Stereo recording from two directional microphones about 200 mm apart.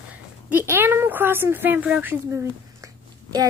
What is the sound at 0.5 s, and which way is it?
A woman's voice, 10° right (ahead or behind).